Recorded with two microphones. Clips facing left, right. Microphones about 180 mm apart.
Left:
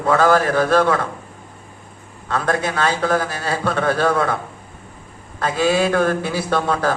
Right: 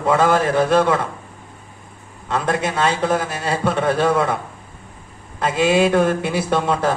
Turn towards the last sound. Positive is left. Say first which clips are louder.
# right 1 dB
turn(degrees=-25)  # may be behind; listen again after turning